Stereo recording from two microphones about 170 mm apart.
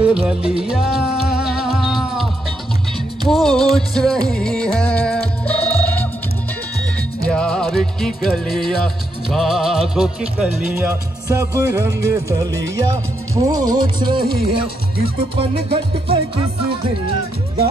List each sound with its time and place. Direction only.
0.0 s music: 5° right (ahead or behind)
3.3 s music: 5° left (ahead or behind)
7.2 s music: 5° left (ahead or behind); by 14.6 s 25° right (ahead or behind)